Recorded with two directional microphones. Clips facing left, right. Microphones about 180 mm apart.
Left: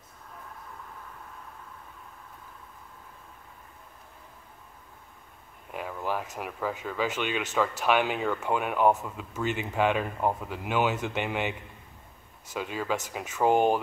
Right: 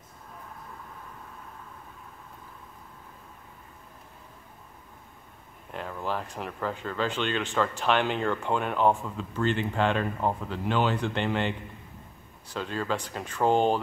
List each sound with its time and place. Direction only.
5.7 s speech: 5° left (ahead or behind)
12.5 s speech: 10° left (ahead or behind)